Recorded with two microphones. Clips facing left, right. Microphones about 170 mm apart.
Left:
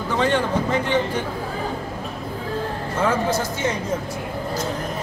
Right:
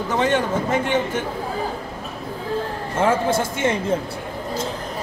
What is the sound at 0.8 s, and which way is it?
Speech, 50° right (ahead or behind).